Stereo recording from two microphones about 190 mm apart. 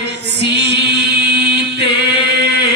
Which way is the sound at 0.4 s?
65° right (ahead or behind).